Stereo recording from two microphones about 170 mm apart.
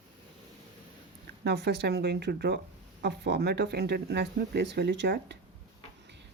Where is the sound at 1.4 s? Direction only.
80° right.